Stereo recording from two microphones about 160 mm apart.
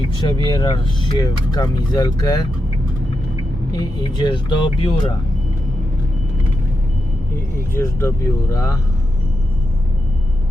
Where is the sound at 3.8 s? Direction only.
25° left (ahead or behind).